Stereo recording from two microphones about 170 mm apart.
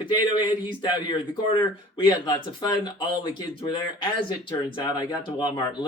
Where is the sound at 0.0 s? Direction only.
25° left (ahead or behind).